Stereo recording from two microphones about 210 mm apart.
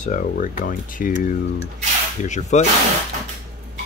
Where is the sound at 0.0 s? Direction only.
40° left (ahead or behind).